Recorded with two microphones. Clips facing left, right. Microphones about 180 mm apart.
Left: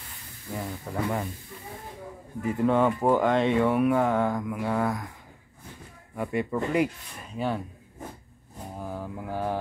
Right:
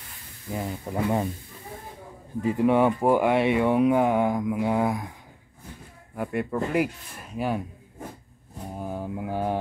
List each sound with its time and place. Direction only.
0.5 s speech: 20° right (ahead or behind)
2.4 s speech: 15° right (ahead or behind)
6.1 s speech: centre (ahead or behind)
8.7 s mantra: 20° right (ahead or behind)